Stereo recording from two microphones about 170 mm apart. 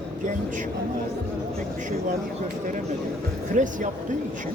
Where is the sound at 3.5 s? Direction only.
50° right (ahead or behind).